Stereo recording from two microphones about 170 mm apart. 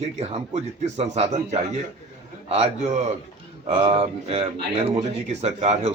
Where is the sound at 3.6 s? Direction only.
35° right (ahead or behind).